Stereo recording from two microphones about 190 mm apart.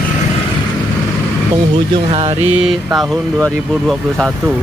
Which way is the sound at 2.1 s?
30° right (ahead or behind).